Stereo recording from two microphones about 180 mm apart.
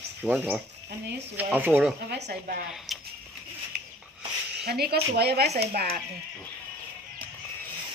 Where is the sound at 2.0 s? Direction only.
70° right (ahead or behind).